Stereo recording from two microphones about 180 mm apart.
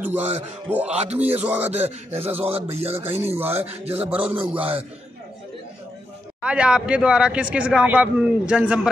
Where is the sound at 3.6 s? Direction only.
35° right (ahead or behind).